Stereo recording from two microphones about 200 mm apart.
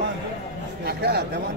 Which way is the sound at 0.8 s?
55° right (ahead or behind).